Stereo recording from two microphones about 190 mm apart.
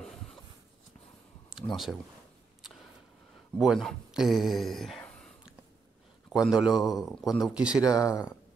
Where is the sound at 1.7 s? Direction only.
Centre (ahead or behind).